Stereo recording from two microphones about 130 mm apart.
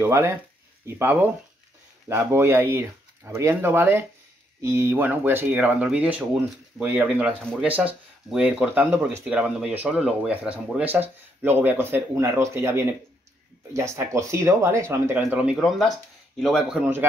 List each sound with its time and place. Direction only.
0.0 s speech: 20° right (ahead or behind)
15.2 s speech: 10° right (ahead or behind)